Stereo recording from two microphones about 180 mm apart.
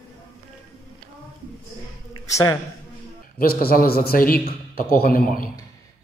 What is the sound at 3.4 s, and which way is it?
A man's voice, 55° left (ahead or behind).